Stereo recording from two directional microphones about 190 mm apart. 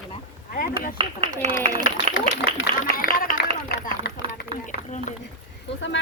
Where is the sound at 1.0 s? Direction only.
30° right (ahead or behind).